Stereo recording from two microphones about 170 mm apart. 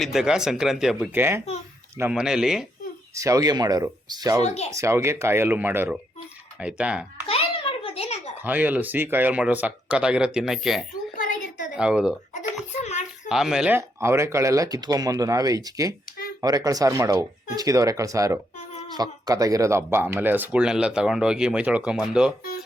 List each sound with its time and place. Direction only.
0.0 s speech: centre (ahead or behind)
3.2 s speech: 20° right (ahead or behind)
4.4 s speech: 40° left (ahead or behind)
4.7 s speech: 15° right (ahead or behind)
7.3 s a sound: 35° left (ahead or behind)
8.4 s speech: 10° right (ahead or behind)
11.2 s a sound: 50° left (ahead or behind)
11.8 s speech: 5° right (ahead or behind)
12.3 s a sound: 45° left (ahead or behind)
13.2 s speech: centre (ahead or behind)